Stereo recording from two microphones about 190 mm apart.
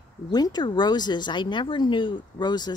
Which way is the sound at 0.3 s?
20° left (ahead or behind).